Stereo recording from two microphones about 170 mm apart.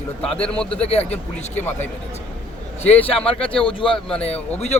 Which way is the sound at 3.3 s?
30° left (ahead or behind).